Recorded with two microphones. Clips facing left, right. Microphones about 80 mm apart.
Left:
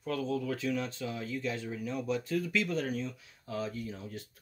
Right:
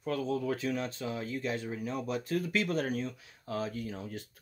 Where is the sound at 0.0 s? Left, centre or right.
Right.